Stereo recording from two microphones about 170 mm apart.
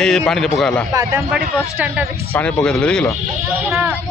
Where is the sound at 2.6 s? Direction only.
5° left (ahead or behind).